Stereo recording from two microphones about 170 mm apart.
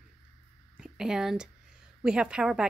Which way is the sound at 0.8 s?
5° right (ahead or behind).